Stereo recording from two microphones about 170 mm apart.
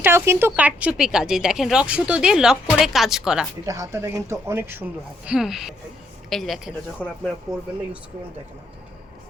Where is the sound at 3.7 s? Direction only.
20° right (ahead or behind); by 7.1 s centre (ahead or behind).